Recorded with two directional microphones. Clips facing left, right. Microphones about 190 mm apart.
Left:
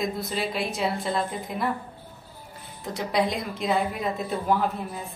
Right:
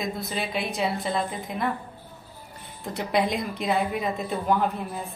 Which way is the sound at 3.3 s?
Centre (ahead or behind).